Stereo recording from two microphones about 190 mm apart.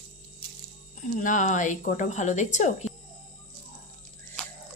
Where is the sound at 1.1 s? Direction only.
45° left (ahead or behind).